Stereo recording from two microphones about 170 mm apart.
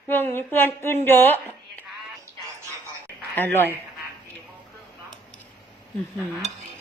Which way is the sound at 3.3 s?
10° left (ahead or behind).